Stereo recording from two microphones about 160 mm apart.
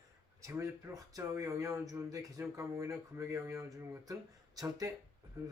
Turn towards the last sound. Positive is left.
turn(degrees=-20)  # may be behind; listen again after turning